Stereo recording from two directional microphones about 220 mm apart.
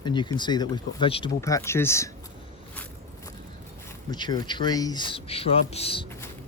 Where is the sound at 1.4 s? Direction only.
10° left (ahead or behind).